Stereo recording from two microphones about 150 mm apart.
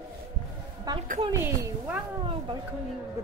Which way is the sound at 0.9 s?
25° right (ahead or behind).